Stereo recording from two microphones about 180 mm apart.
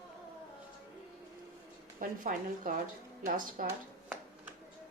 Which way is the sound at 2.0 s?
50° right (ahead or behind).